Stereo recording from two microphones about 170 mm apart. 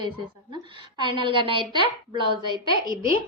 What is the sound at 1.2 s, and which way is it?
A woman's voice, 30° right (ahead or behind).